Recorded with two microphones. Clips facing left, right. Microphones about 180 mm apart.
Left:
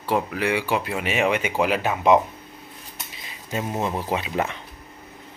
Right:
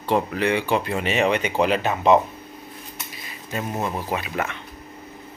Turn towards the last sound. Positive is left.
turn(degrees=25)  # may be behind; listen again after turning